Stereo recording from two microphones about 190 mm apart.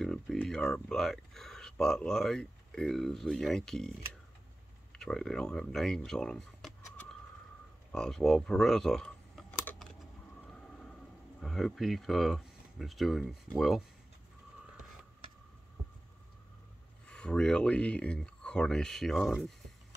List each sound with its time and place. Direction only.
0.0 s speech: 5° left (ahead or behind)
10.5 s vehicle: 5° left (ahead or behind)
11.4 s speech: centre (ahead or behind)
17.1 s speech: 5° left (ahead or behind)